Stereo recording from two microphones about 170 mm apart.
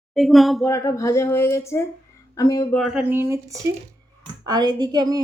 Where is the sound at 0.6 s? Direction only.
20° left (ahead or behind).